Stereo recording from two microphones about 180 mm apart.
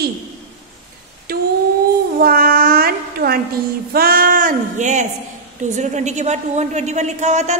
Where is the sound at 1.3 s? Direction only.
55° right (ahead or behind).